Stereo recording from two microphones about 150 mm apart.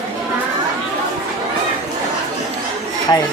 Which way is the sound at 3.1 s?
25° left (ahead or behind).